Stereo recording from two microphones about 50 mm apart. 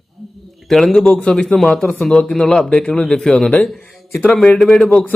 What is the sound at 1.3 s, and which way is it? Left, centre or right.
Speech, centre.